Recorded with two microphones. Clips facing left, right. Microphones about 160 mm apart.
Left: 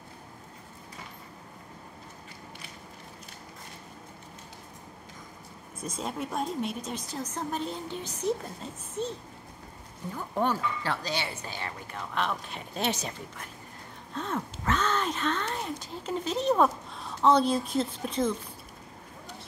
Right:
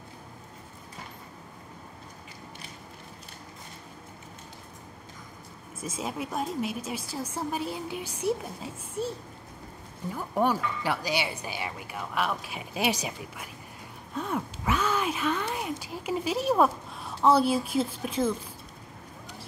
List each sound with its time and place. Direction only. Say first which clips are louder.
5.8 s speech: right 1 dB; 5° right (ahead or behind)
10.1 s speech: right 2 dB; 10° right (ahead or behind)